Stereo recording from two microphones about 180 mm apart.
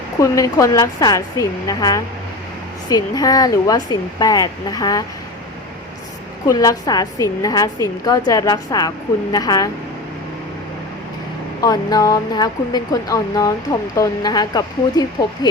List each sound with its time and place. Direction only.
0.2 s a woman's voice: 20° left (ahead or behind)
6.5 s a woman's voice: 20° left (ahead or behind)
11.6 s a woman's voice: 20° left (ahead or behind)